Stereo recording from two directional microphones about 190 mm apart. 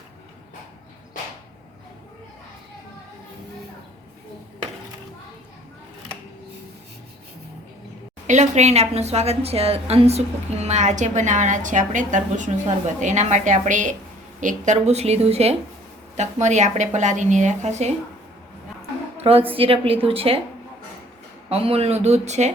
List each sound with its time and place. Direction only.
8.3 s a woman's voice: 40° right (ahead or behind)
19.1 s a sound: 30° right (ahead or behind)
19.5 s a woman's voice: 30° right (ahead or behind)
21.5 s a woman's voice: 30° right (ahead or behind)